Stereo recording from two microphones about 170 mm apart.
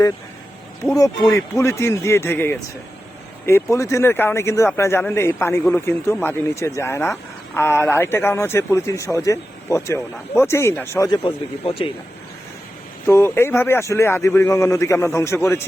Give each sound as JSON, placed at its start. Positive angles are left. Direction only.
{"t": 0.9, "sound": "a man's voice", "side_deg": 20}
{"t": 13.1, "sound": "a man's voice", "side_deg": 15}